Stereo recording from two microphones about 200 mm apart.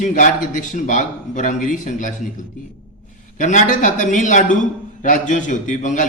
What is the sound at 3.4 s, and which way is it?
A man's voice, 40° left (ahead or behind).